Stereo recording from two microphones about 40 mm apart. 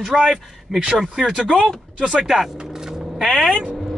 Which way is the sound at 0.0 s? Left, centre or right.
Centre.